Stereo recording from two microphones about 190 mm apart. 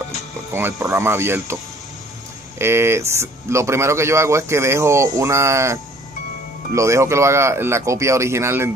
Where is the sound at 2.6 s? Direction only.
15° right (ahead or behind).